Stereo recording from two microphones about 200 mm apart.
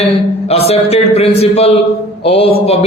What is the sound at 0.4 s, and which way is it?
Speech, 30° left (ahead or behind).